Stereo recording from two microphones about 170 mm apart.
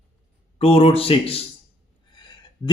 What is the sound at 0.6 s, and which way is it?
Speech, 35° left (ahead or behind).